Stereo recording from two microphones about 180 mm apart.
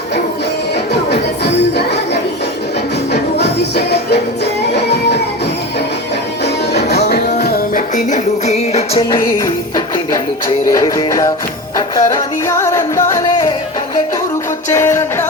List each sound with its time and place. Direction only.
1.1 s music: 70° left (ahead or behind)
3.1 s music: 70° left (ahead or behind)
6.4 s music: 70° left (ahead or behind); by 9.0 s 35° left (ahead or behind)
9.0 s music: 20° left (ahead or behind)
14.7 s music: 15° left (ahead or behind)